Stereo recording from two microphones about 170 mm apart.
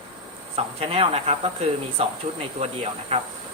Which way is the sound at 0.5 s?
35° right (ahead or behind).